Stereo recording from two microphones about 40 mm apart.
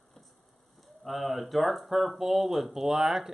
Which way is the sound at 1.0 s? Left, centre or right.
Centre.